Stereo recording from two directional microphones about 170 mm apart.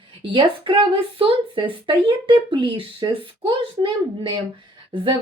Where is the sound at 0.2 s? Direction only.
30° right (ahead or behind).